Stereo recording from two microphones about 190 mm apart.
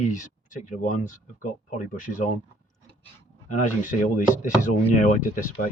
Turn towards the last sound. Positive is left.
turn(degrees=40)  # may be behind; listen again after turning